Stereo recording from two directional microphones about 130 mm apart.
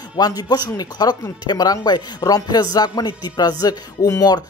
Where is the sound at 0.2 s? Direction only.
30° left (ahead or behind).